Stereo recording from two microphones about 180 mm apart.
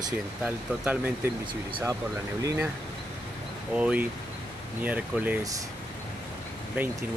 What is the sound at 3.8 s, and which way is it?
Speech, 5° right (ahead or behind).